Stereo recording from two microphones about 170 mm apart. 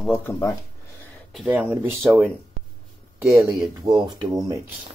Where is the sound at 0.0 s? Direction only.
10° left (ahead or behind).